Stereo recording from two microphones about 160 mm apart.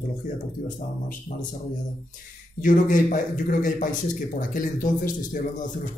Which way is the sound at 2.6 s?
55° left (ahead or behind).